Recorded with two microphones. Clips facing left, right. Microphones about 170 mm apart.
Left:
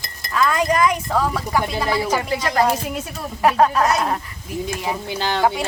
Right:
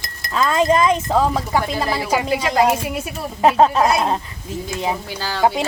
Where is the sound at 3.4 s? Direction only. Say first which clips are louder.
Right 2 dB; 25° right (ahead or behind).